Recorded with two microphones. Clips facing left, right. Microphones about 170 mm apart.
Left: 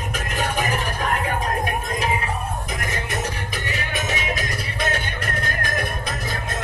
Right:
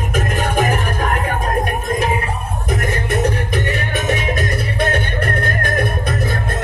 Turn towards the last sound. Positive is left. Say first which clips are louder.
# right 7 dB
turn(degrees=-55)  # may be behind; listen again after turning